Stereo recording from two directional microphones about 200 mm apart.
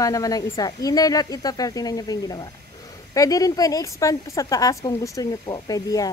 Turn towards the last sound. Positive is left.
turn(degrees=20)  # may be behind; listen again after turning